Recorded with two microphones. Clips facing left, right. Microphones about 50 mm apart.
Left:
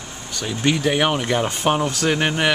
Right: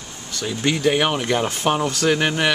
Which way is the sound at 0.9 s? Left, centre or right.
Centre.